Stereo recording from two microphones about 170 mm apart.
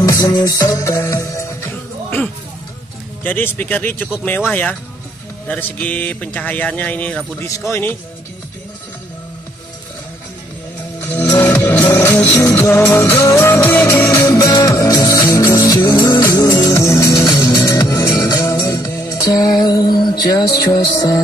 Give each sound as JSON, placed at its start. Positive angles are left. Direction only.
{"t": 0.0, "sound": "music", "side_deg": 20}
{"t": 3.3, "sound": "speech", "side_deg": 10}
{"t": 11.0, "sound": "music", "side_deg": 10}